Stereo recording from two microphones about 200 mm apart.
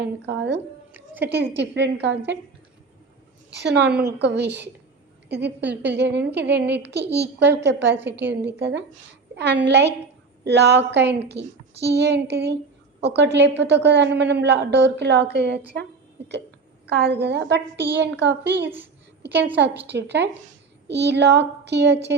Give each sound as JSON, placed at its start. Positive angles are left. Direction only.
{"t": 0.0, "sound": "a woman's voice", "side_deg": -60}
{"t": 0.9, "sound": "a sound", "side_deg": -10}
{"t": 1.5, "sound": "a woman's voice", "side_deg": -60}
{"t": 3.6, "sound": "a woman's voice", "side_deg": -60}
{"t": 18.6, "sound": "a woman's voice", "side_deg": -10}
{"t": 19.2, "sound": "a woman's voice", "side_deg": -55}